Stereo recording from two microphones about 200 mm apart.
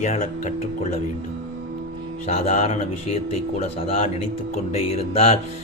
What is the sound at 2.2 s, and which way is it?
Speech, 30° left (ahead or behind).